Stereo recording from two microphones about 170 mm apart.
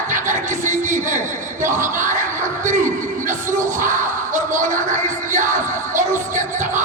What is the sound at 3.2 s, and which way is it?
Crowd, 50° right (ahead or behind).